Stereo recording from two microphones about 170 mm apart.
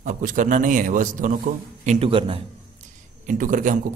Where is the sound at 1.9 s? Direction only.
35° right (ahead or behind).